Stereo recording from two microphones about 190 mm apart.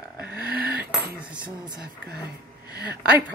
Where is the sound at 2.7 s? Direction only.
20° left (ahead or behind).